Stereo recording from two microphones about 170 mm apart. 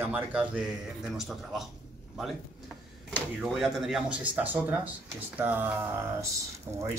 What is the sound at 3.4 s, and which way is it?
Speech, centre (ahead or behind).